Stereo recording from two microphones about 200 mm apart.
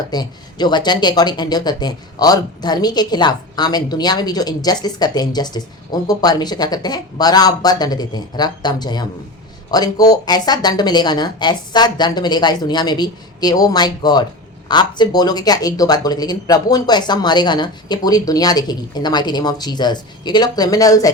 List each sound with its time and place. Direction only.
0.1 s speech: 20° left (ahead or behind)